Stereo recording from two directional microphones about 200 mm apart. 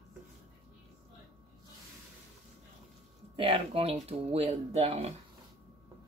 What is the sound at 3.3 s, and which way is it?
Speech, 30° right (ahead or behind).